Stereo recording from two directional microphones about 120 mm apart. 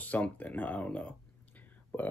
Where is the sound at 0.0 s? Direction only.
15° left (ahead or behind).